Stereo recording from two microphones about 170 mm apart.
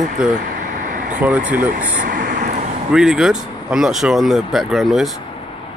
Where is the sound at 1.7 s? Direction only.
50° right (ahead or behind).